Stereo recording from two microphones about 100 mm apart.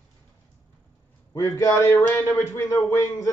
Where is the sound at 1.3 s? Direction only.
35° left (ahead or behind).